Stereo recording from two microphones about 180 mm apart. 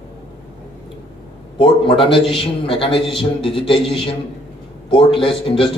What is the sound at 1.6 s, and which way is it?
A man's voice, 30° left (ahead or behind).